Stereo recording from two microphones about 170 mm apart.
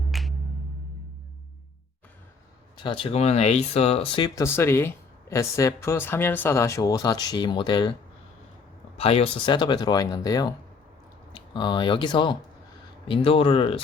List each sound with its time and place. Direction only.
0.1 s music: centre (ahead or behind)
2.7 s speech: 30° left (ahead or behind)
4.4 s speech: 15° left (ahead or behind)
9.0 s speech: 35° left (ahead or behind)